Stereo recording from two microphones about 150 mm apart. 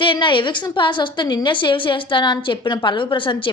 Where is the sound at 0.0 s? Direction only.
35° left (ahead or behind).